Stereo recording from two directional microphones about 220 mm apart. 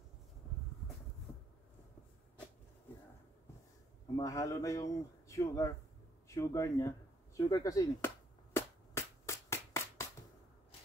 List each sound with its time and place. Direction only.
4.2 s a man's voice: 15° left (ahead or behind)
8.5 s music: 10° left (ahead or behind)